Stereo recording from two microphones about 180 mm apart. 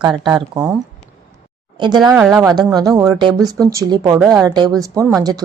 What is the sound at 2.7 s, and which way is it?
Speech, 20° right (ahead or behind).